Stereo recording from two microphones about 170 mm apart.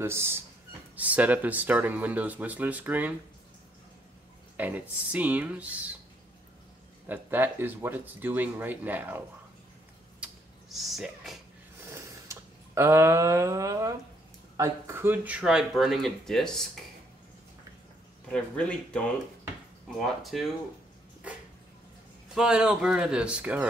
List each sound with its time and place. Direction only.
0.0 s speech: 15° right (ahead or behind)
4.6 s speech: 10° right (ahead or behind)
7.1 s speech: 10° right (ahead or behind)
10.2 s a sound: centre (ahead or behind)
11.8 s a sound: 15° right (ahead or behind)
14.6 s speech: 15° right (ahead or behind); by 16.6 s centre (ahead or behind)
18.3 s speech: 5° left (ahead or behind)
20.3 s speech: centre (ahead or behind)
22.3 s speech: 5° right (ahead or behind)